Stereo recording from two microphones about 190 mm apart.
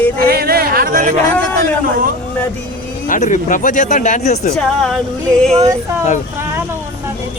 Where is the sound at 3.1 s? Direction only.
40° left (ahead or behind).